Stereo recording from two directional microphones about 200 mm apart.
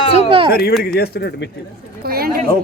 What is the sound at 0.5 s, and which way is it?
Speech, 50° left (ahead or behind).